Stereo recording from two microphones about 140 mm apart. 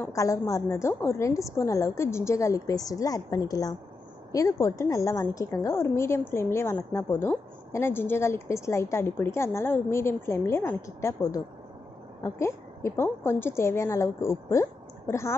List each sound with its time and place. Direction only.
0.1 s a woman's voice: 25° left (ahead or behind)